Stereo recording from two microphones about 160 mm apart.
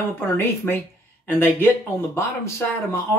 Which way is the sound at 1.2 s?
15° left (ahead or behind).